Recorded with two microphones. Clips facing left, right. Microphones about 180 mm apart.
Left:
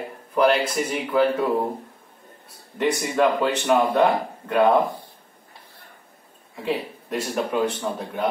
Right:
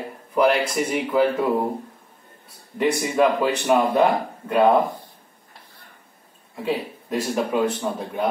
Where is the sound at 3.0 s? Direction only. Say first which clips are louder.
Right 1 dB; 5° right (ahead or behind).